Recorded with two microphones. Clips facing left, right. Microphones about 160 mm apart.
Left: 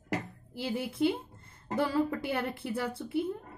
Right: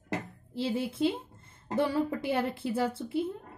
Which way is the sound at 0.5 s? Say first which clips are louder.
Right 3 dB; 25° right (ahead or behind).